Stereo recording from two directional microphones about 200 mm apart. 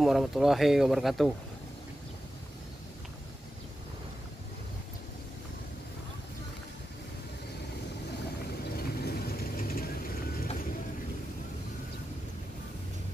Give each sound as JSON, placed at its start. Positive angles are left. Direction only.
{"t": 0.0, "sound": "speech", "side_deg": 0}
{"t": 8.7, "sound": "vehicle", "side_deg": 50}